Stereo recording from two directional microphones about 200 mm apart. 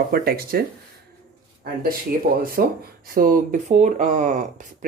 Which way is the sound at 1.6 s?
50° right (ahead or behind).